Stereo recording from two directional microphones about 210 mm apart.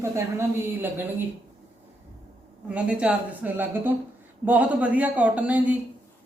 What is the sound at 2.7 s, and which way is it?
A woman's voice, 5° right (ahead or behind).